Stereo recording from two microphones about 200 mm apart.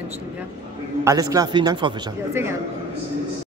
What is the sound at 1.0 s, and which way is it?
Speech, 20° right (ahead or behind).